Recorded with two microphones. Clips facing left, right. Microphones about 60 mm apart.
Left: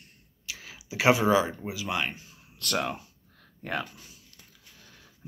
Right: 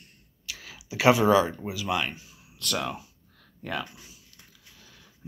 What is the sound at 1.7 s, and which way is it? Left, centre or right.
Speech, left.